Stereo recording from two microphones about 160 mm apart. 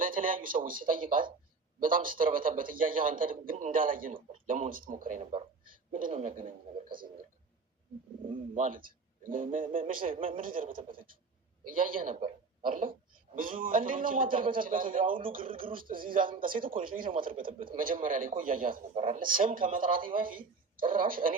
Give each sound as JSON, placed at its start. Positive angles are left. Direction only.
{"t": 0.0, "sound": "a man's voice", "side_deg": -60}
{"t": 8.5, "sound": "a man's voice", "side_deg": -55}
{"t": 18.9, "sound": "speech", "side_deg": -45}
{"t": 19.2, "sound": "a man's voice", "side_deg": -60}